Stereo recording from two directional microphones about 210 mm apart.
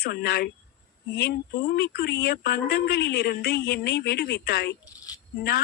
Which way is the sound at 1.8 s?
55° left (ahead or behind).